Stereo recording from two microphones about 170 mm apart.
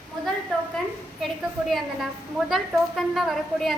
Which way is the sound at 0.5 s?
Centre (ahead or behind).